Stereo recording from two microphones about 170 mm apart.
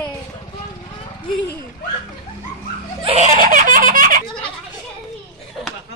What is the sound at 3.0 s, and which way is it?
Laughter, 35° right (ahead or behind).